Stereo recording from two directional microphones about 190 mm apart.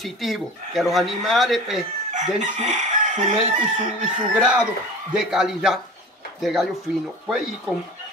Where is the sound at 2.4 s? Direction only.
40° right (ahead or behind).